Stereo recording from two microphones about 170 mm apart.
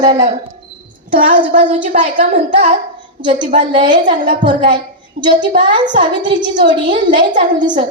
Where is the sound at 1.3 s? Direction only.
50° right (ahead or behind).